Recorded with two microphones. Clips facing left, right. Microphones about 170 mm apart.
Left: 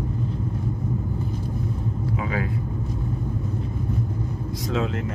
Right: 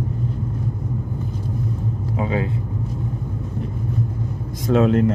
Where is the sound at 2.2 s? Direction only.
25° right (ahead or behind).